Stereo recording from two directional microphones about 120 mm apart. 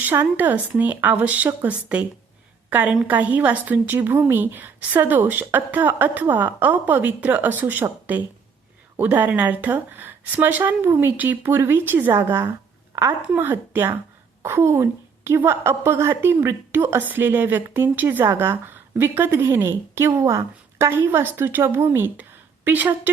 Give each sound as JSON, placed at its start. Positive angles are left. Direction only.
{"t": 0.0, "sound": "a woman's voice", "side_deg": -15}